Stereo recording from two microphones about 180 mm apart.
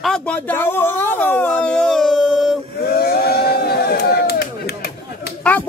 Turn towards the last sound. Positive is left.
turn(degrees=10)  # may be behind; listen again after turning